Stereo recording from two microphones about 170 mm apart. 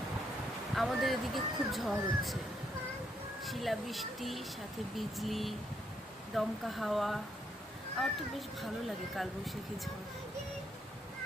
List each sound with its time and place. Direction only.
0.8 s speech: centre (ahead or behind)
3.4 s speech: centre (ahead or behind)